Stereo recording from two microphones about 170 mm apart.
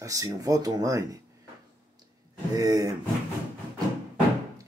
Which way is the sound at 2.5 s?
20° right (ahead or behind).